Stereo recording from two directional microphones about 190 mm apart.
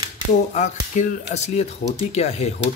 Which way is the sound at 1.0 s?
40° left (ahead or behind).